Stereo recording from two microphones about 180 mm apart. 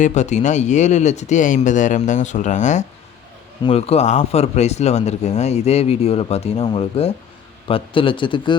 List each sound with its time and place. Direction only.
0.0 s speech: 40° left (ahead or behind)
3.6 s speech: 30° left (ahead or behind)